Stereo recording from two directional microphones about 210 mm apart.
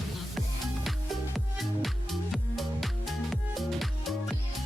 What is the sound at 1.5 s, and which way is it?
Music, centre (ahead or behind).